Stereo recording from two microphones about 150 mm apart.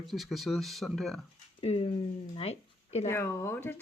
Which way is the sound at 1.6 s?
40° left (ahead or behind).